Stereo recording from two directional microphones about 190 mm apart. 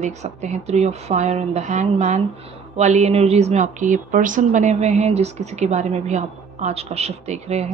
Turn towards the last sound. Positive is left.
turn(degrees=-35)  # may be behind; listen again after turning